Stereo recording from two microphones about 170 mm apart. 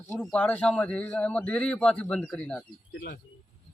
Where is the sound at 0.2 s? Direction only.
5° left (ahead or behind).